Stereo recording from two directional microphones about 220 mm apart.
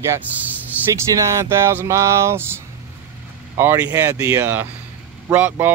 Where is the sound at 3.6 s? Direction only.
10° right (ahead or behind).